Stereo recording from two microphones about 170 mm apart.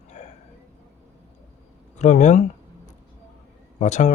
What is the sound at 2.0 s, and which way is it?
Speech, 45° left (ahead or behind).